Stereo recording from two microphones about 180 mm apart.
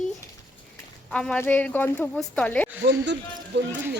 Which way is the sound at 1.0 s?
5° left (ahead or behind).